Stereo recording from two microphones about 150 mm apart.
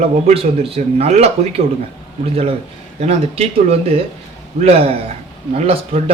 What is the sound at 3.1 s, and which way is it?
A man's voice, 40° right (ahead or behind).